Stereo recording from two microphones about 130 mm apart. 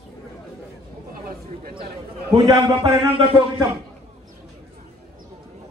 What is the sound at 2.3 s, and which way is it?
Speech, 30° right (ahead or behind).